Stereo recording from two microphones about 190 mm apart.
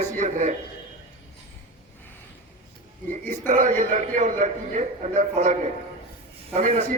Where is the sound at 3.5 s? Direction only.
45° right (ahead or behind).